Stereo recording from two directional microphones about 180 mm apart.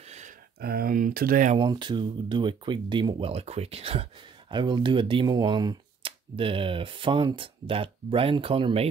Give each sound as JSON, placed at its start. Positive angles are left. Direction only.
{"t": 0.0, "sound": "a sound", "side_deg": -40}
{"t": 0.6, "sound": "speech", "side_deg": -60}
{"t": 1.6, "sound": "speech", "side_deg": -25}